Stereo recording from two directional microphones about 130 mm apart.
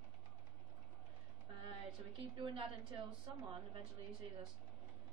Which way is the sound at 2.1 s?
40° right (ahead or behind).